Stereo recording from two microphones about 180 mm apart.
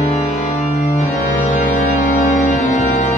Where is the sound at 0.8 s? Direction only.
40° left (ahead or behind).